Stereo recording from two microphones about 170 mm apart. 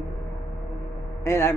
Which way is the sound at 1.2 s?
15° left (ahead or behind).